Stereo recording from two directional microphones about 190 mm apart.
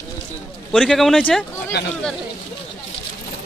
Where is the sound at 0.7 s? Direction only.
Centre (ahead or behind).